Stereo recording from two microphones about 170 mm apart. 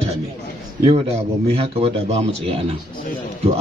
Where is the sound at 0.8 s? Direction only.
35° right (ahead or behind).